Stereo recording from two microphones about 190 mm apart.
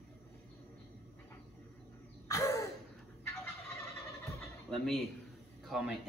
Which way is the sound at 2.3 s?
15° left (ahead or behind).